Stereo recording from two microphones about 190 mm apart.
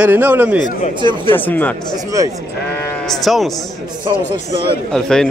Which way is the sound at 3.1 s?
Centre (ahead or behind).